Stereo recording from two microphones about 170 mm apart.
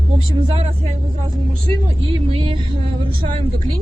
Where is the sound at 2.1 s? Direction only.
35° right (ahead or behind).